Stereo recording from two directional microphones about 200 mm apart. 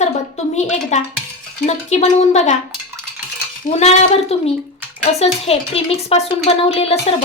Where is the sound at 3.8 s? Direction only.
30° left (ahead or behind).